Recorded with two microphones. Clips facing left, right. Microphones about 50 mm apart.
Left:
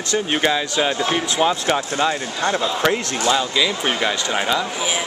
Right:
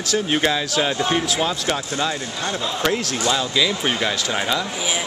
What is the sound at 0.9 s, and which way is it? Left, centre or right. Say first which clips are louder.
Speech: left 1 dB; centre.